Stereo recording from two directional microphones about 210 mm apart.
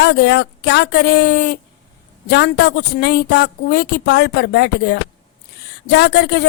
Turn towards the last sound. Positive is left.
turn(degrees=55)  # may be behind; listen again after turning